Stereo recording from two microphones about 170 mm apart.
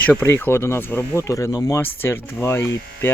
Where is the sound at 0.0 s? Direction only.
10° left (ahead or behind).